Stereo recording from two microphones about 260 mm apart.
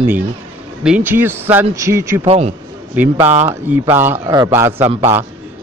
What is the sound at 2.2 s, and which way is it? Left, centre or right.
Speech, right.